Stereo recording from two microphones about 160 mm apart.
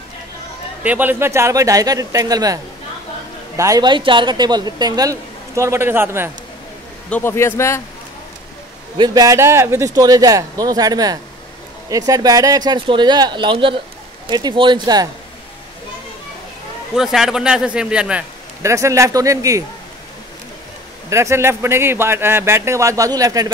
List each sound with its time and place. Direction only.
0.8 s speech: 10° right (ahead or behind)
7.1 s a man's voice: 15° left (ahead or behind)
8.9 s speech: 25° right (ahead or behind)
16.9 s speech: 5° right (ahead or behind)
18.6 s speech: 20° right (ahead or behind)
21.1 s speech: 15° right (ahead or behind)